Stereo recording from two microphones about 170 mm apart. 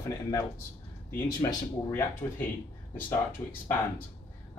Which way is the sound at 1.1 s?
20° left (ahead or behind).